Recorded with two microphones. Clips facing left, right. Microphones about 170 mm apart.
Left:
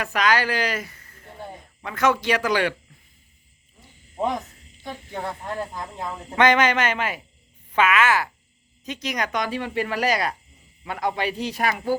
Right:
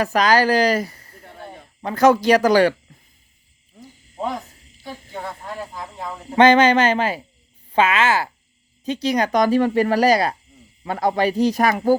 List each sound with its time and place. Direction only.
0.0 s speech: 35° right (ahead or behind)
4.2 s speech: 20° left (ahead or behind)
4.8 s speech: centre (ahead or behind)
6.3 s speech: 30° right (ahead or behind)